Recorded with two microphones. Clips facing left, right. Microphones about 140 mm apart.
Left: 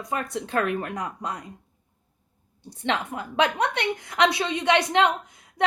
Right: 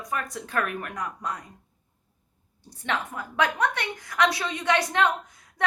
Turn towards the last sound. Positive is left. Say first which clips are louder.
# left 1 dB
turn(degrees=20)  # may be behind; listen again after turning